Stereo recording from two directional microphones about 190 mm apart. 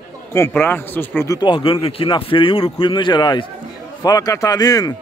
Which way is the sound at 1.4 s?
25° left (ahead or behind).